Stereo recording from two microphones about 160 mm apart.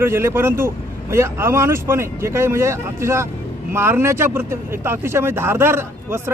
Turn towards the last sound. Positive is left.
turn(degrees=-15)  # may be behind; listen again after turning